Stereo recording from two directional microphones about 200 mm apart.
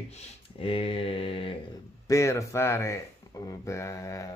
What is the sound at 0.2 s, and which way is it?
Speech, 25° left (ahead or behind).